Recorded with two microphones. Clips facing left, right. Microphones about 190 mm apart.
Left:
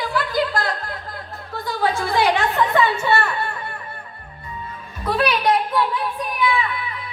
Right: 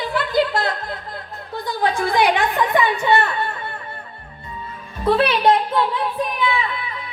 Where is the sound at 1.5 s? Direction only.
20° right (ahead or behind).